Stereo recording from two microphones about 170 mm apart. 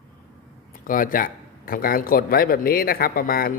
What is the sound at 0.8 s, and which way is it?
A man's voice, 55° left (ahead or behind).